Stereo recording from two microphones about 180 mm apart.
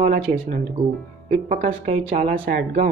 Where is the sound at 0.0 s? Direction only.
45° right (ahead or behind).